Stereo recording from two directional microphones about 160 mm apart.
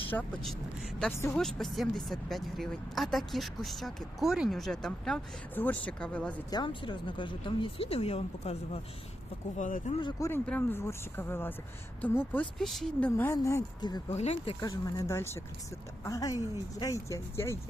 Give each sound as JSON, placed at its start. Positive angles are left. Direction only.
{"t": 0.1, "sound": "speech", "side_deg": 5}
{"t": 6.5, "sound": "speech", "side_deg": 30}
{"t": 9.6, "sound": "speech", "side_deg": 50}
{"t": 10.0, "sound": "speech", "side_deg": 25}
{"t": 13.1, "sound": "speech", "side_deg": 15}
{"t": 14.1, "sound": "speech", "side_deg": 40}
{"t": 14.6, "sound": "speech", "side_deg": 20}